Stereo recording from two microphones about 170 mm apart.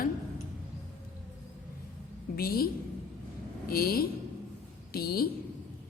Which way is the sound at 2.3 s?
60° left (ahead or behind).